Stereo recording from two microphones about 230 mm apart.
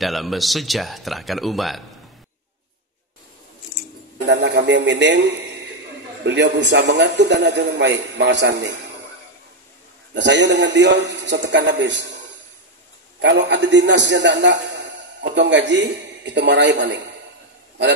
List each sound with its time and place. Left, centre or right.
0.0 s speech: centre
4.3 s a man's voice: right
6.2 s a man's voice: right
10.1 s a man's voice: right
13.2 s a man's voice: right